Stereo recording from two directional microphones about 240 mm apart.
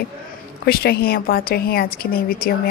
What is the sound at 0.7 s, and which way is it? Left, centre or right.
A woman's voice, left.